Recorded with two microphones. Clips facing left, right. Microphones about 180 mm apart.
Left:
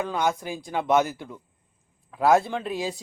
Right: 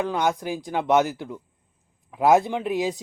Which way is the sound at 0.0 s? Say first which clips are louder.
Right 2 dB; 15° right (ahead or behind).